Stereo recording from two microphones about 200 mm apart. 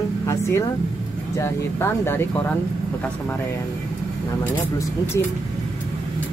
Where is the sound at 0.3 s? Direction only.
15° left (ahead or behind).